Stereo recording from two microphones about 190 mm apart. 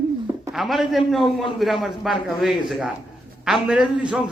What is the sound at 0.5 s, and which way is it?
A man's voice, centre (ahead or behind).